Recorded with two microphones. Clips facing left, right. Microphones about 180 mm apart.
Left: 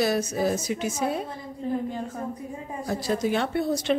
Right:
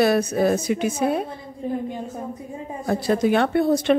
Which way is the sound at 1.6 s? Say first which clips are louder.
Right 1 dB; 20° right (ahead or behind).